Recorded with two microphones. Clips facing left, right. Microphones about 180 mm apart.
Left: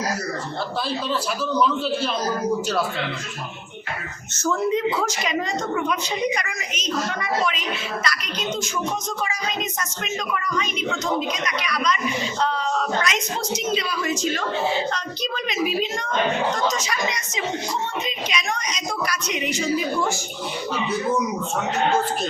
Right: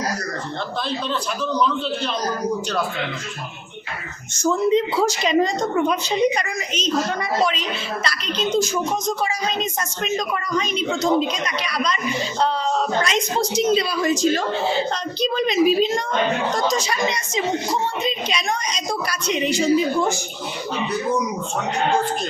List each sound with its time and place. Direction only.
4.4 s speech: 15° right (ahead or behind)
4.9 s a woman's voice: 30° right (ahead or behind)
8.0 s a woman's voice: 30° right (ahead or behind)
13.0 s a woman's voice: 30° right (ahead or behind)